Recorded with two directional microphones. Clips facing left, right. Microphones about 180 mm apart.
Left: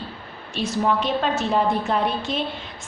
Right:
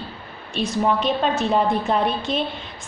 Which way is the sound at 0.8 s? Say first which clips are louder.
Right 1 dB; 15° right (ahead or behind).